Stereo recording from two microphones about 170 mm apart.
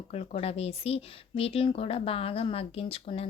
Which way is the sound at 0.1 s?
35° left (ahead or behind).